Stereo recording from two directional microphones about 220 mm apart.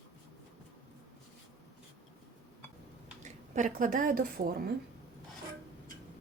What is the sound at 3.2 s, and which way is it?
Speech, 35° right (ahead or behind).